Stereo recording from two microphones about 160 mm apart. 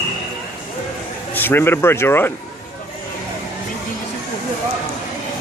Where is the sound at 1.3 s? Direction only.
10° left (ahead or behind).